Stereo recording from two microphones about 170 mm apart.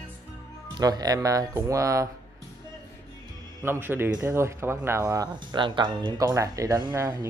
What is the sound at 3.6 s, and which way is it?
Speech, 15° right (ahead or behind).